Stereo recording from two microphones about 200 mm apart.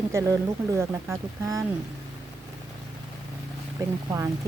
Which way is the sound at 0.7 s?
15° right (ahead or behind).